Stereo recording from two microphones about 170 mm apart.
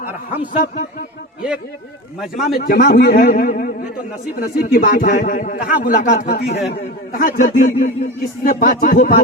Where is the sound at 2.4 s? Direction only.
60° left (ahead or behind).